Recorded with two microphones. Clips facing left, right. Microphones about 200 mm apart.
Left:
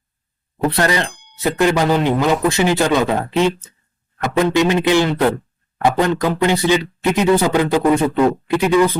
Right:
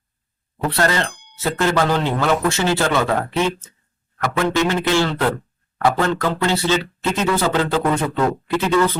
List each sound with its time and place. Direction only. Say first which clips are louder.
0.8 s speech: even; 15° left (ahead or behind)
1.1 s a sound: even; centre (ahead or behind)
1.4 s speech: left 3 dB; 15° left (ahead or behind)